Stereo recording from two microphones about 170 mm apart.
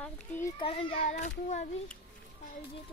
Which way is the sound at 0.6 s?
30° left (ahead or behind).